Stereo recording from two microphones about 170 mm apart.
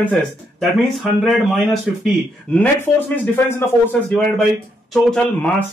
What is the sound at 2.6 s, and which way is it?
Speech, 10° left (ahead or behind).